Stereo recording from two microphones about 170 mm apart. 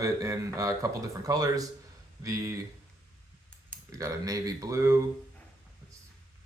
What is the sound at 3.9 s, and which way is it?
Speech, 20° right (ahead or behind).